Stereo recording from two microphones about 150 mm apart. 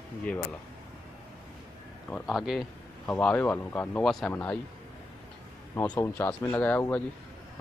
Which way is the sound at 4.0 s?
Centre (ahead or behind).